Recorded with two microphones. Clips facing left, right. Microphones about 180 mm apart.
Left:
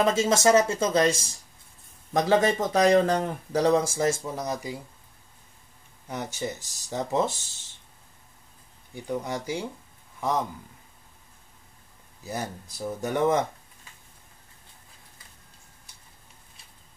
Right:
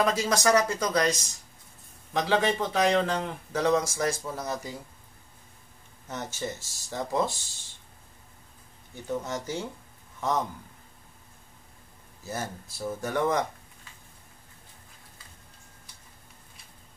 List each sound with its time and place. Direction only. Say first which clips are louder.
0.0 s speech: left 3 dB; 25° left (ahead or behind)
2.1 s speech: left 3 dB; 45° left (ahead or behind); by 4.7 s 15° left (ahead or behind)
6.0 s speech: left 2 dB; 15° left (ahead or behind)
8.9 s speech: left 1 dB; 15° left (ahead or behind)
12.2 s speech: left 2 dB; 15° left (ahead or behind)